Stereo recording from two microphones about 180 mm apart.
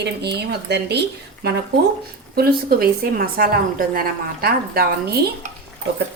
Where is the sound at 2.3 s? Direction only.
55° right (ahead or behind).